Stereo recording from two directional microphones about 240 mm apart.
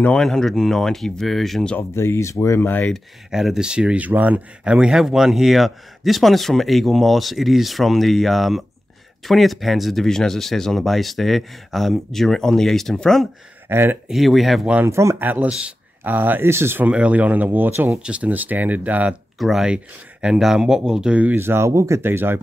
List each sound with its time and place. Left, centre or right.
0.0 s speech: centre
13.7 s speech: centre